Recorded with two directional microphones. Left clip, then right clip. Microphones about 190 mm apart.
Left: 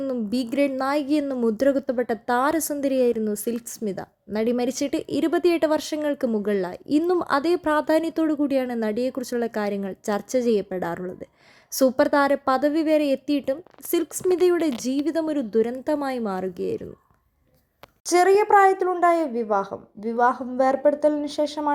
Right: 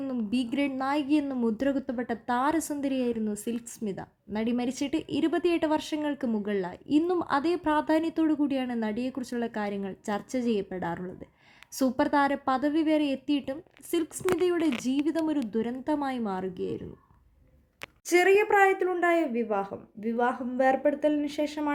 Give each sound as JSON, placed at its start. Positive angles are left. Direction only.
{"t": 0.0, "sound": "a woman's voice", "side_deg": 20}
{"t": 18.0, "sound": "a woman's voice", "side_deg": 10}